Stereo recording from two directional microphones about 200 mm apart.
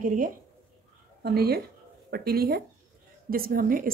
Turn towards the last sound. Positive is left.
turn(degrees=-45)  # may be behind; listen again after turning